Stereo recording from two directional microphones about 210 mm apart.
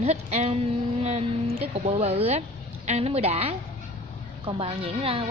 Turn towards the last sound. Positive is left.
turn(degrees=-25)  # may be behind; listen again after turning